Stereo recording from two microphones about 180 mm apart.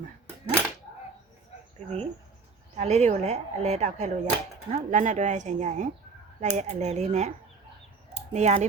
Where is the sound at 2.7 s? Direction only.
40° right (ahead or behind).